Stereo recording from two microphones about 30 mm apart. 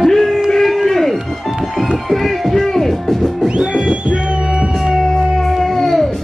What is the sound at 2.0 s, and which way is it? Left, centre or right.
Speech, centre.